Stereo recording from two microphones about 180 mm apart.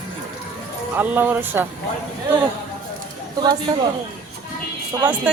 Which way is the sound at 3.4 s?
25° right (ahead or behind).